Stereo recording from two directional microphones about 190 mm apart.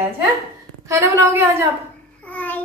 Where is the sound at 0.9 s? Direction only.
15° right (ahead or behind).